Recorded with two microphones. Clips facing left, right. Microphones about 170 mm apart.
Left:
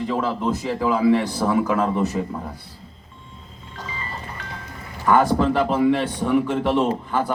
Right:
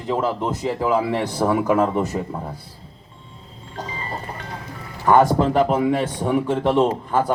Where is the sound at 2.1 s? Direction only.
30° right (ahead or behind).